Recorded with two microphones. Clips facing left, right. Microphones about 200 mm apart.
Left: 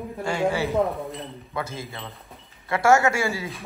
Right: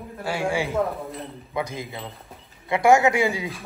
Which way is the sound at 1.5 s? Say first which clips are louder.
Right 3 dB; 15° right (ahead or behind).